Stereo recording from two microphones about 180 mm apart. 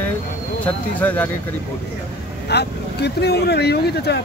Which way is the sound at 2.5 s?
65° left (ahead or behind).